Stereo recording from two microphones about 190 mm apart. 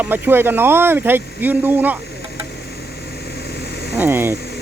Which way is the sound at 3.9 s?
10° right (ahead or behind).